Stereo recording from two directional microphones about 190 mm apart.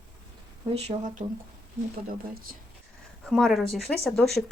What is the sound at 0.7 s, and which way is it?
Speech, 35° right (ahead or behind).